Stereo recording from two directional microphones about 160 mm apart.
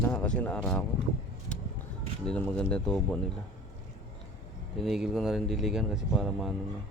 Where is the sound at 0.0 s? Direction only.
10° left (ahead or behind).